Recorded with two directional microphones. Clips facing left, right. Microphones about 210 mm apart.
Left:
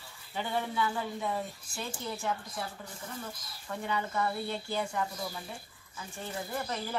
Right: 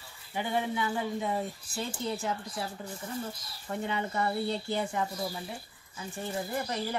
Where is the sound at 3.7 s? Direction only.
20° right (ahead or behind).